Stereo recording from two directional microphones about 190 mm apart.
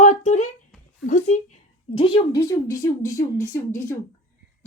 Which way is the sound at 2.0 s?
30° left (ahead or behind).